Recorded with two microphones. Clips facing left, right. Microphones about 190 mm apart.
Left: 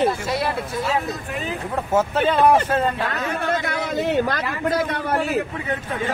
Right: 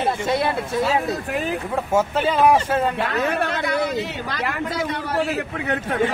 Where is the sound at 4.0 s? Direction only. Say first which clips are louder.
Left 6 dB; 50° left (ahead or behind).